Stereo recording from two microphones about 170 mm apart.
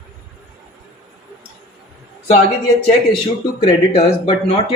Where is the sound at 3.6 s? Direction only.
35° left (ahead or behind).